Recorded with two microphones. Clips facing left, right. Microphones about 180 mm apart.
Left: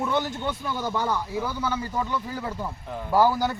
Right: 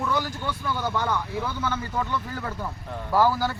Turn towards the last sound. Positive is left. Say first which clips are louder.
# left 1 dB
turn(degrees=20)  # may be behind; listen again after turning